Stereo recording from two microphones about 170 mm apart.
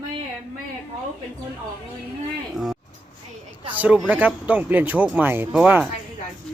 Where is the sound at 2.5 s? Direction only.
5° right (ahead or behind).